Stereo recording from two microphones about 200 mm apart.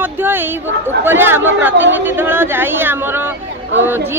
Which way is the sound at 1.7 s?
65° right (ahead or behind).